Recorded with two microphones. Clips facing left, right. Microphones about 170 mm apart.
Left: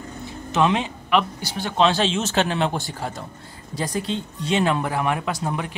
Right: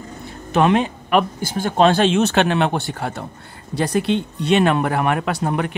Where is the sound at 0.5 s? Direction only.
55° right (ahead or behind).